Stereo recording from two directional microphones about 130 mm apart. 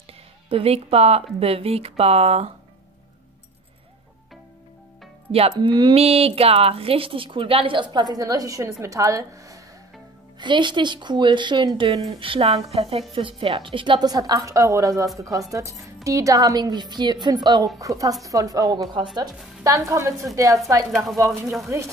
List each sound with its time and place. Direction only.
0.5 s speech: 50° right (ahead or behind)
5.6 s a woman's voice: 35° right (ahead or behind)
5.9 s a woman's voice: 50° right (ahead or behind); by 9.6 s 25° right (ahead or behind)
10.4 s a woman's voice: 35° right (ahead or behind)
11.9 s a woman's voice: 45° right (ahead or behind); by 20.2 s 25° right (ahead or behind)
20.9 s speech: centre (ahead or behind)